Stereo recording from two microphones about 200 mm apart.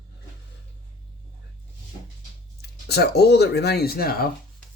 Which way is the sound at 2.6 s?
55° left (ahead or behind).